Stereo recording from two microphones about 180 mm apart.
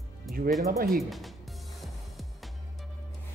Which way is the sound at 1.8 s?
Centre (ahead or behind).